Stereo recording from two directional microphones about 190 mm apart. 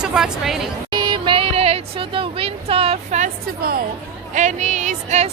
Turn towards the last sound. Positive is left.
turn(degrees=-40)  # may be behind; listen again after turning